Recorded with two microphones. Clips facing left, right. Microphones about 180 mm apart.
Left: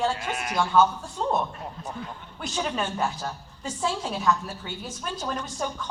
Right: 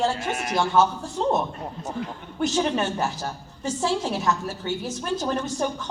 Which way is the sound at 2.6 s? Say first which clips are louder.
Right 2 dB; 25° right (ahead or behind).